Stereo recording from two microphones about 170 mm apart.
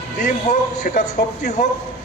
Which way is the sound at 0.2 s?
45° left (ahead or behind).